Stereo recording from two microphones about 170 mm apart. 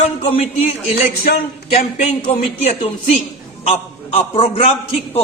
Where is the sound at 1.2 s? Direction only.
60° left (ahead or behind).